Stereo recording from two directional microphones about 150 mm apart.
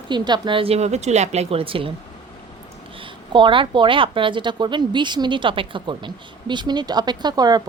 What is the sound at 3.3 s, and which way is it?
Speech, 35° right (ahead or behind).